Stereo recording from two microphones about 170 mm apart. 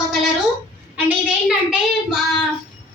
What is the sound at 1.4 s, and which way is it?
A woman's voice, 5° right (ahead or behind).